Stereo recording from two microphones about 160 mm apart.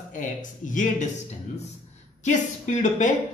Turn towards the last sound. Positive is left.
turn(degrees=50)  # may be behind; listen again after turning